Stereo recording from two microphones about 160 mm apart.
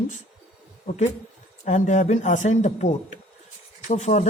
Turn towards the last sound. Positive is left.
turn(degrees=45)  # may be behind; listen again after turning